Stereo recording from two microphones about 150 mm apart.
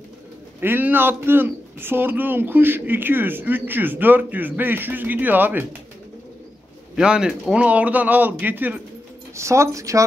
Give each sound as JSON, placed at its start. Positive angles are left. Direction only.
{"t": 0.6, "sound": "a man's voice", "side_deg": -15}
{"t": 7.0, "sound": "a man's voice", "side_deg": -5}